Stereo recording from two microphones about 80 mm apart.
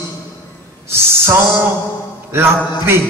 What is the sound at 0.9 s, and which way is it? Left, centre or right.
Speech, right.